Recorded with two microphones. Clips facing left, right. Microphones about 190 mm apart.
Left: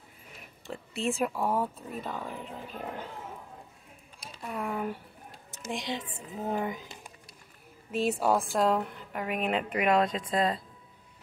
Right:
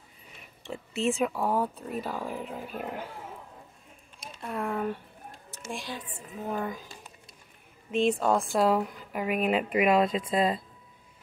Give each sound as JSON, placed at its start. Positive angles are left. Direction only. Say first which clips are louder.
{"t": 0.7, "sound": "speech", "louder": "right 3 dB", "side_deg": 0}
{"t": 4.2, "sound": "speech", "louder": "right 2 dB", "side_deg": 0}
{"t": 5.7, "sound": "speech", "louder": "left 3 dB", "side_deg": 20}
{"t": 7.9, "sound": "a woman's voice", "louder": "right 2 dB", "side_deg": 5}